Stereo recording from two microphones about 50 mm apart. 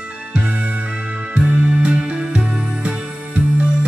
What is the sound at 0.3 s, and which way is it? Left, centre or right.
Music, right.